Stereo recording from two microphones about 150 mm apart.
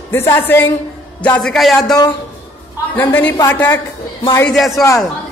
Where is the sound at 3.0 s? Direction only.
15° left (ahead or behind).